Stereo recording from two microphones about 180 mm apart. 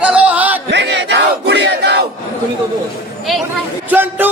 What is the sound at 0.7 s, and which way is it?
Battle cry, 75° right (ahead or behind).